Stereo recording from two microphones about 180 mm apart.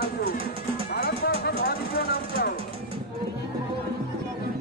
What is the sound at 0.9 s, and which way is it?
Music, 60° left (ahead or behind).